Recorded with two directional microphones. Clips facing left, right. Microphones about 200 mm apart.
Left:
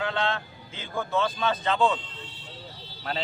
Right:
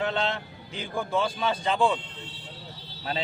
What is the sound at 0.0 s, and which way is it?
Speech, 20° right (ahead or behind).